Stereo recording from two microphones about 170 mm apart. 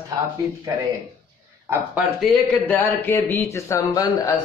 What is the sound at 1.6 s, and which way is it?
Speech, 10° right (ahead or behind).